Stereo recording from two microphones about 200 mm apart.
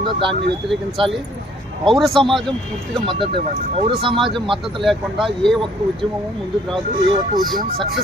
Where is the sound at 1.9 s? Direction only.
Centre (ahead or behind).